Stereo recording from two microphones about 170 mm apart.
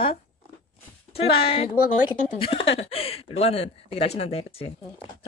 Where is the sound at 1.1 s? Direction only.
30° left (ahead or behind).